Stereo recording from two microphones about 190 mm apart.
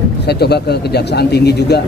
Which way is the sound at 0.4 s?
60° left (ahead or behind).